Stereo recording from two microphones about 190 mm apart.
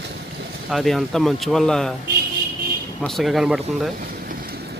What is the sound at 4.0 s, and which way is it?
Vehicle, 50° right (ahead or behind).